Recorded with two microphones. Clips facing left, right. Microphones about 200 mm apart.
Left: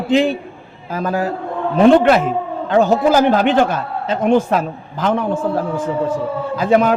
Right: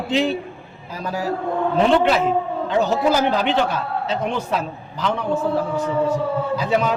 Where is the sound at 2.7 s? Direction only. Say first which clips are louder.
Left 6 dB; 50° left (ahead or behind).